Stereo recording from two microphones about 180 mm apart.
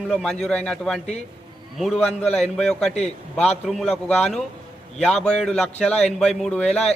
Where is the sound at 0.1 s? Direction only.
Centre (ahead or behind).